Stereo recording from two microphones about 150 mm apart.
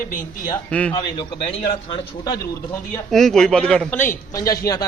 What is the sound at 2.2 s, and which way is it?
Speech, 25° left (ahead or behind).